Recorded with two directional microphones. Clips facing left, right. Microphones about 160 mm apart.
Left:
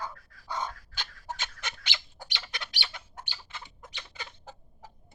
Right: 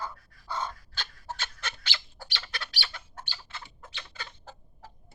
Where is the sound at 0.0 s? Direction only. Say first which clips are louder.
Right 1 dB; 15° left (ahead or behind).